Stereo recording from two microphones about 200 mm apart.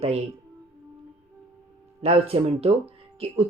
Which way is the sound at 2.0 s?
30° right (ahead or behind).